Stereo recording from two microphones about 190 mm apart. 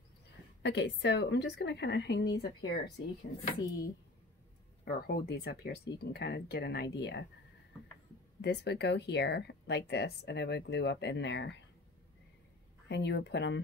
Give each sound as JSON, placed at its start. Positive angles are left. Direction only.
{"t": 0.6, "sound": "speech", "side_deg": 65}
{"t": 4.8, "sound": "speech", "side_deg": 55}
{"t": 8.4, "sound": "speech", "side_deg": 60}
{"t": 12.8, "sound": "speech", "side_deg": 65}